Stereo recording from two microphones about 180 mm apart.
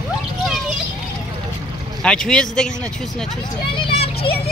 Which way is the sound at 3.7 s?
30° left (ahead or behind).